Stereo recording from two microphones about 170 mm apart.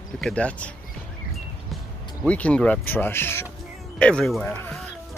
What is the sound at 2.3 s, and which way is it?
Speech, 10° left (ahead or behind).